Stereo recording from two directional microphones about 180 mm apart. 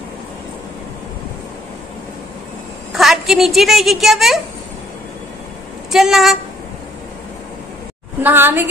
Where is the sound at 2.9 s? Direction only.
Centre (ahead or behind).